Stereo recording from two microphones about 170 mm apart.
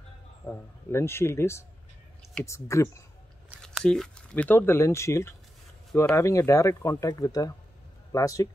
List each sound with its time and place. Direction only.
0.5 s speech: 15° left (ahead or behind)
3.6 s speech: 5° left (ahead or behind); by 8.5 s 20° left (ahead or behind)